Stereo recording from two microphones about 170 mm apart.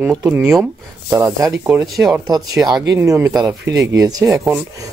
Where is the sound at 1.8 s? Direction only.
Centre (ahead or behind).